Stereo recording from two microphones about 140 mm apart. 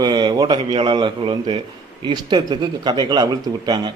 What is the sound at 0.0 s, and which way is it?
A man's voice, 30° right (ahead or behind).